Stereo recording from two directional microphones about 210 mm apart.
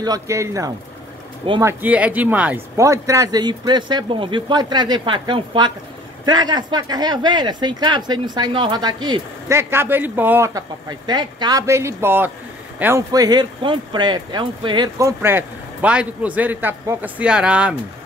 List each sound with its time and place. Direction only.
0.0 s speech: 15° right (ahead or behind)